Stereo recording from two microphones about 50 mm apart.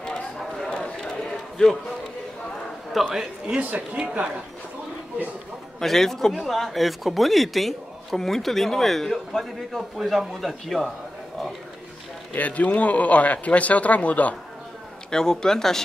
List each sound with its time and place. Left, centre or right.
0.0 s a sound: centre
3.2 s speech: centre
5.8 s speech: centre
12.4 s speech: left
15.0 s speech: centre